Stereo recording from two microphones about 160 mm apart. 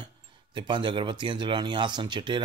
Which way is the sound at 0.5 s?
30° right (ahead or behind).